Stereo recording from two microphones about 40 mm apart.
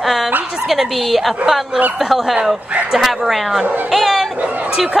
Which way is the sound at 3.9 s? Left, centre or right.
Centre.